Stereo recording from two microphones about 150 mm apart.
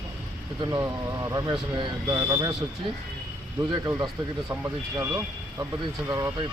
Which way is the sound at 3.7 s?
20° right (ahead or behind).